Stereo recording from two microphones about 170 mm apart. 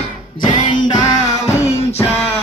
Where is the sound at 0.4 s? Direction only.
25° left (ahead or behind).